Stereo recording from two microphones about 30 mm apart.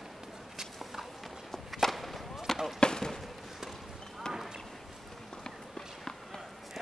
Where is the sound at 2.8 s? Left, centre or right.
Left.